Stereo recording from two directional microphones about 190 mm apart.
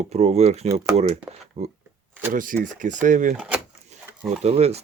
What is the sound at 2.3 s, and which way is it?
Speech, 45° right (ahead or behind).